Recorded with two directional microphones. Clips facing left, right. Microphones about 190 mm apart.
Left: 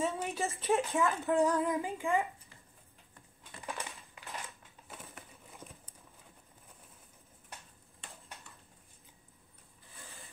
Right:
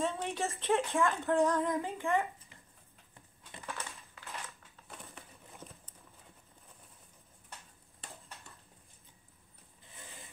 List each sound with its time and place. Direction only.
0.0 s speech: 10° left (ahead or behind)
3.6 s crushing: 15° left (ahead or behind)
4.8 s patter: 5° left (ahead or behind)